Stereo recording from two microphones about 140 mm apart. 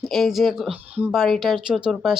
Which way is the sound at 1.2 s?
Centre (ahead or behind).